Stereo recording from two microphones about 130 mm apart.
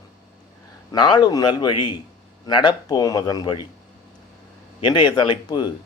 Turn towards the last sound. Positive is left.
turn(degrees=35)  # may be behind; listen again after turning